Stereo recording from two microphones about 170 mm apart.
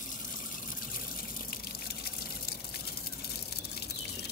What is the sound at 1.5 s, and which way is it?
Water, 65° left (ahead or behind).